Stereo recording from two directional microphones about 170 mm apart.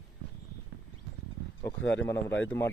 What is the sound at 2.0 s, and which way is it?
Speech, 15° left (ahead or behind).